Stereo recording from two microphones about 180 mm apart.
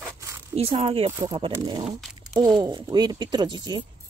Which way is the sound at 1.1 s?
15° right (ahead or behind).